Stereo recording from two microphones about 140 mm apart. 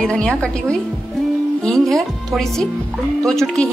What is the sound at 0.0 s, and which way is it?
A woman's voice, 5° left (ahead or behind).